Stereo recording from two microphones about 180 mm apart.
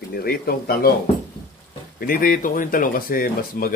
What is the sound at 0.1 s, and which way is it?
Speech, 60° left (ahead or behind).